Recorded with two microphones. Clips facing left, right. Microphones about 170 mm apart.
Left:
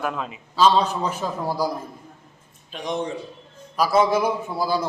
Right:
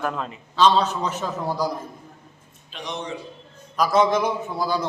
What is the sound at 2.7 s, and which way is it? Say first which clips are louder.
Speech: left 5 dB; 45° left (ahead or behind).